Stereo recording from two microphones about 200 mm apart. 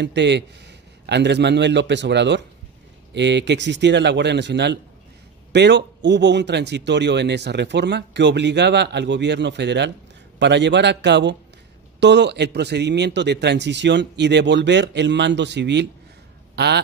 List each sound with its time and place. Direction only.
0.0 s a man's voice: 60° right (ahead or behind)